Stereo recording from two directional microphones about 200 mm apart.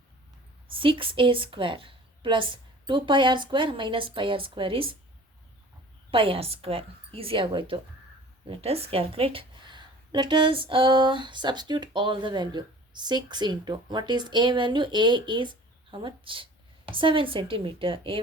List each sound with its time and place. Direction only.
0.7 s a woman's voice: 25° right (ahead or behind)
6.1 s a woman's voice: 25° right (ahead or behind)